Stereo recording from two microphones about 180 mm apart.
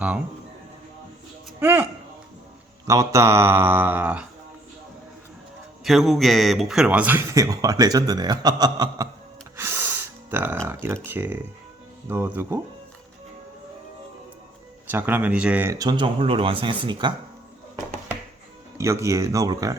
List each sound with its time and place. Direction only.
1.5 s speech: 10° right (ahead or behind)
2.8 s speech: 15° right (ahead or behind)
5.8 s speech: centre (ahead or behind); by 9.0 s 20° right (ahead or behind)
9.6 s music: 15° right (ahead or behind)
10.8 s speech: 15° right (ahead or behind)
14.8 s speech: 10° right (ahead or behind); by 17.2 s 25° right (ahead or behind)
18.8 s speech: 15° right (ahead or behind)